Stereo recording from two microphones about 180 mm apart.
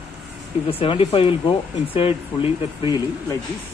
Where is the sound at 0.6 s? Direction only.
30° left (ahead or behind).